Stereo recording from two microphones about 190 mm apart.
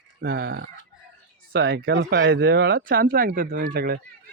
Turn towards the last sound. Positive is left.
turn(degrees=-55)  # may be behind; listen again after turning